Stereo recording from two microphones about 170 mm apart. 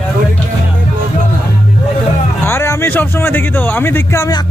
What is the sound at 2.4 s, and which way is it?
Speech, 15° left (ahead or behind).